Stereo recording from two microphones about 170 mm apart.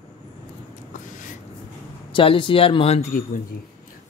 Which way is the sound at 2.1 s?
30° left (ahead or behind).